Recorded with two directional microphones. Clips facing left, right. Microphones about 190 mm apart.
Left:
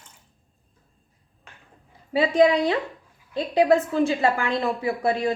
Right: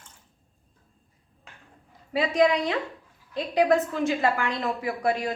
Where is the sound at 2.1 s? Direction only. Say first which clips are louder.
Left 4 dB; 30° left (ahead or behind).